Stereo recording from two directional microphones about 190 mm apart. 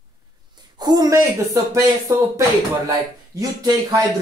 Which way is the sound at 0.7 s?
20° right (ahead or behind).